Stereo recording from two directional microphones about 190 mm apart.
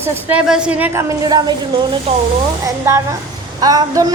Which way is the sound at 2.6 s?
15° right (ahead or behind).